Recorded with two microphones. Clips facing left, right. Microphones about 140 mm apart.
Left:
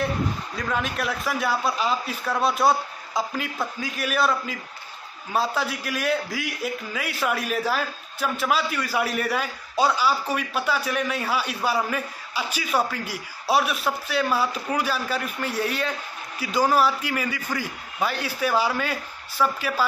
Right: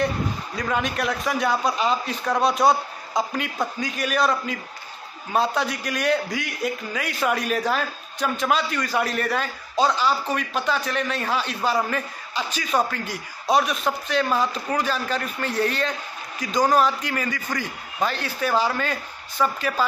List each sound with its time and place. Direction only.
0.6 s a man's voice: centre (ahead or behind)